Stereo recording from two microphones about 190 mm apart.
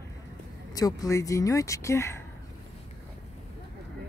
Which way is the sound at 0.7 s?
20° left (ahead or behind).